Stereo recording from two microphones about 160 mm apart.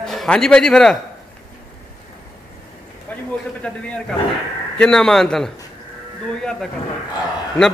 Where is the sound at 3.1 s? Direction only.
10° left (ahead or behind).